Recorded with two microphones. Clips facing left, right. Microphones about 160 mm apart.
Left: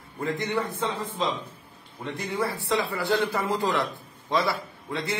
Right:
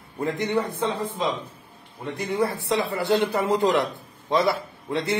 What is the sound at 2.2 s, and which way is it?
A man's voice, 20° right (ahead or behind).